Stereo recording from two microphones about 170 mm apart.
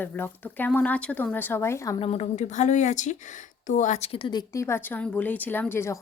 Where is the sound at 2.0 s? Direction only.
35° left (ahead or behind).